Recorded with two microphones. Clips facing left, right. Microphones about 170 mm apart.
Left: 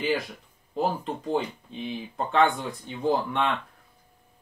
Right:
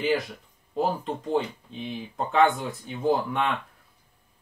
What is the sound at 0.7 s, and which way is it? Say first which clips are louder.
Speech: right 1 dB; centre (ahead or behind).